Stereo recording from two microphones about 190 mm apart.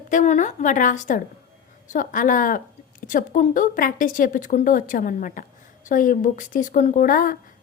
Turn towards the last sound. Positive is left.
turn(degrees=45)  # may be behind; listen again after turning